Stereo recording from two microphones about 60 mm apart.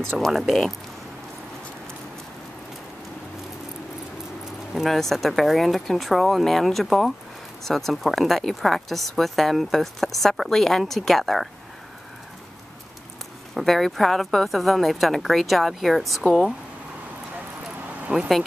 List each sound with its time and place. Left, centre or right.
0.1 s speech: centre
0.5 s a woman's voice: centre
4.7 s a woman's voice: centre
13.6 s a woman's voice: centre
18.1 s speech: centre